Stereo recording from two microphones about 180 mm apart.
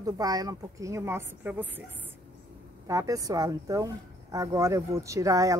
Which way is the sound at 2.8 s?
20° right (ahead or behind).